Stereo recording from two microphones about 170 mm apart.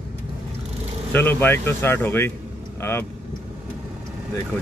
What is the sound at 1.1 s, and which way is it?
Speech, 10° left (ahead or behind).